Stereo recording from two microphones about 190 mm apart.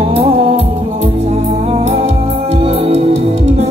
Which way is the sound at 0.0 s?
30° right (ahead or behind).